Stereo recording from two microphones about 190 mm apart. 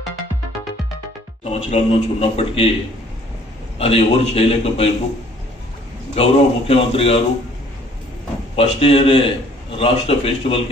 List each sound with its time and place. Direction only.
1.4 s a man's voice: 35° left (ahead or behind)
3.7 s a man's voice: 30° left (ahead or behind)
6.1 s a man's voice: 30° left (ahead or behind)
8.5 s a man's voice: 30° left (ahead or behind)